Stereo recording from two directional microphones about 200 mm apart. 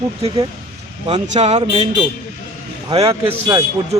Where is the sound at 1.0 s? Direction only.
35° right (ahead or behind).